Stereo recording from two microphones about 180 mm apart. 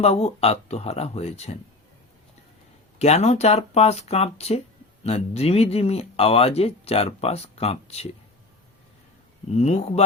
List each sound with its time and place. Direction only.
0.0 s speech: 35° left (ahead or behind)
3.0 s speech: 35° left (ahead or behind)
9.6 s speech: 35° left (ahead or behind)